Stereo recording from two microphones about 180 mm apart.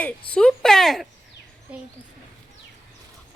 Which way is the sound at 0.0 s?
5° left (ahead or behind).